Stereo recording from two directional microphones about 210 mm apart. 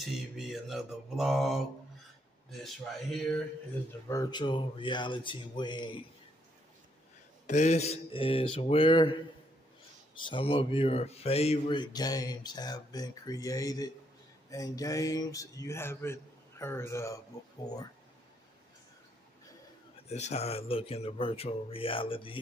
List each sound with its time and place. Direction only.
0.0 s mantra: centre (ahead or behind)
2.6 s mantra: centre (ahead or behind)
4.1 s speech: 20° left (ahead or behind)
7.4 s speech: 35° left (ahead or behind); by 17.2 s 15° left (ahead or behind)
20.1 s speech: 30° left (ahead or behind)